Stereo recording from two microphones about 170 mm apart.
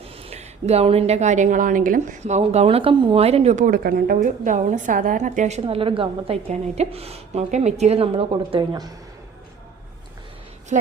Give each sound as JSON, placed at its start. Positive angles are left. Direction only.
{"t": 0.0, "sound": "a woman's voice", "side_deg": -35}
{"t": 10.7, "sound": "a woman's voice", "side_deg": -45}